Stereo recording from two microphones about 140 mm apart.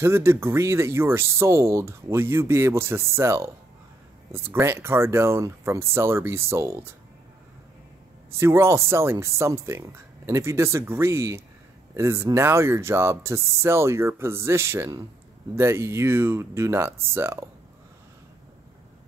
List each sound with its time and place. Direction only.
0.0 s speech: 20° right (ahead or behind)
8.3 s speech: 20° right (ahead or behind)